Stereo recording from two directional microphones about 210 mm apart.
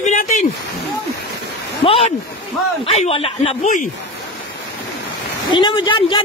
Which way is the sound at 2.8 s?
30° left (ahead or behind).